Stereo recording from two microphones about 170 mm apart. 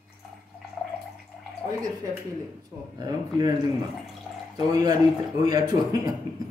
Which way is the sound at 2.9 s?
25° right (ahead or behind).